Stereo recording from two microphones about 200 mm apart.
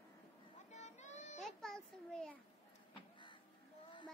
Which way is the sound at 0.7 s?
35° left (ahead or behind).